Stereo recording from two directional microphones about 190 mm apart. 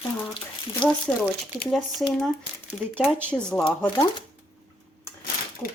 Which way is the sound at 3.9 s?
20° left (ahead or behind).